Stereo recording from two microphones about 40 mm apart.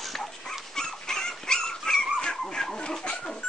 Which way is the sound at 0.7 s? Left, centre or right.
Centre.